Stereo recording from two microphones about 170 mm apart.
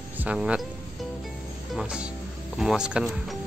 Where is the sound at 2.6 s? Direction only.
5° right (ahead or behind).